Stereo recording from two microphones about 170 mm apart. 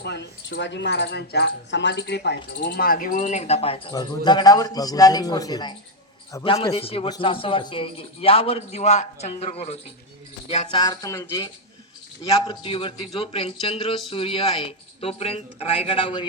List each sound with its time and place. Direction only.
0.0 s a man's voice: 85° left; by 9.7 s 35° left (ahead or behind)
10.7 s a man's voice: 25° left (ahead or behind)
12.5 s a man's voice: 30° left (ahead or behind)